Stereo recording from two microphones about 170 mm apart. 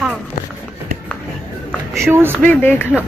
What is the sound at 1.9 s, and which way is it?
Speech, 15° right (ahead or behind).